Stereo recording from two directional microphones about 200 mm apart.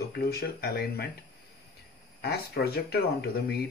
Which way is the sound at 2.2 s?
50° left (ahead or behind).